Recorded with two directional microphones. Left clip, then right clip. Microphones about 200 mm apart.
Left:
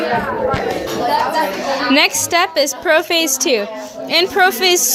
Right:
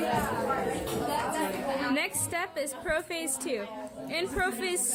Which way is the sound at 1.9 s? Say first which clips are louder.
Left 18 dB; 20° left (ahead or behind).